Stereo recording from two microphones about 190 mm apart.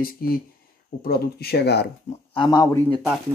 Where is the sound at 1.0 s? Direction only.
55° left (ahead or behind).